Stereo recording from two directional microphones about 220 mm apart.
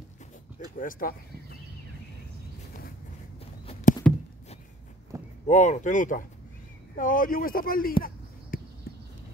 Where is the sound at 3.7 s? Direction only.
35° left (ahead or behind).